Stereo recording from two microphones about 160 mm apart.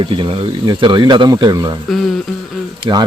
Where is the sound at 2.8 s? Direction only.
30° right (ahead or behind).